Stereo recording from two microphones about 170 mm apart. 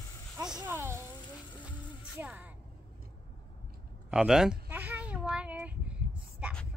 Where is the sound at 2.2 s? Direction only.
10° right (ahead or behind).